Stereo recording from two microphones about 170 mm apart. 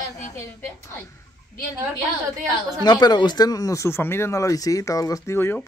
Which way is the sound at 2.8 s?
25° left (ahead or behind).